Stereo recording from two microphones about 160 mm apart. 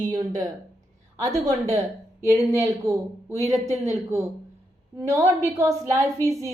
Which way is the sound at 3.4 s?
45° right (ahead or behind).